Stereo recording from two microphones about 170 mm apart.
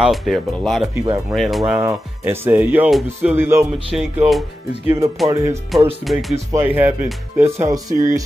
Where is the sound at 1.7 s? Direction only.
15° right (ahead or behind).